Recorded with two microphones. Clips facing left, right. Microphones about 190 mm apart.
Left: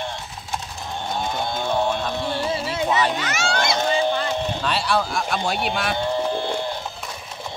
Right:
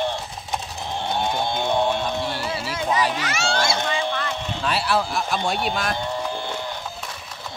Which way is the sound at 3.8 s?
35° left (ahead or behind).